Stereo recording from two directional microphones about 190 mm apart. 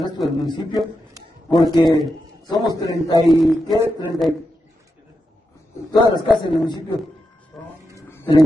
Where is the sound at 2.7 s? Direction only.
20° left (ahead or behind).